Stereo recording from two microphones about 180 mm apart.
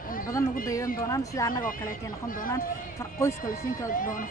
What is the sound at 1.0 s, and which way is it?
Speech, 20° left (ahead or behind).